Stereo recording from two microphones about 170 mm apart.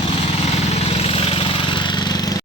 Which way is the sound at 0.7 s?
35° left (ahead or behind).